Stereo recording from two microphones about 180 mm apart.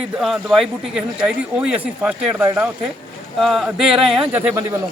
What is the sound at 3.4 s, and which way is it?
Speech, centre (ahead or behind).